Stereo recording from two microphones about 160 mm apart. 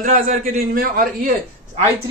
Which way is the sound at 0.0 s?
60° right (ahead or behind).